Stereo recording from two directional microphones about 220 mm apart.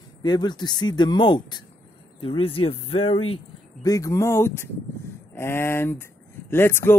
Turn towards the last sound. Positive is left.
turn(degrees=10)  # may be behind; listen again after turning